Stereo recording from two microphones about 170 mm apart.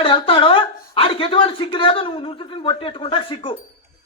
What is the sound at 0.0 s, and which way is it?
Speech, 30° left (ahead or behind).